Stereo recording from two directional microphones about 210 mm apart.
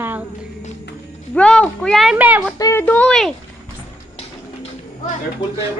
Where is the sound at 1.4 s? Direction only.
5° left (ahead or behind).